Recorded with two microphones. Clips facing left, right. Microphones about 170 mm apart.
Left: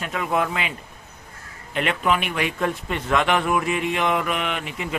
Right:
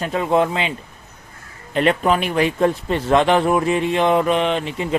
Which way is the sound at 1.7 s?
35° right (ahead or behind).